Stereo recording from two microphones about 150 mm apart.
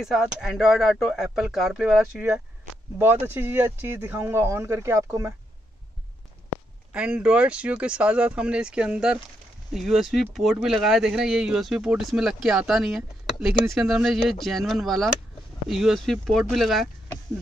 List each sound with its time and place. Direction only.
0.0 s speech: centre (ahead or behind); by 5.3 s 20° right (ahead or behind)
6.9 s speech: 5° right (ahead or behind)